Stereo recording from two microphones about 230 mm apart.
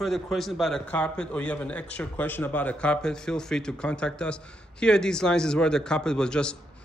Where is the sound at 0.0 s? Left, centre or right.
Centre.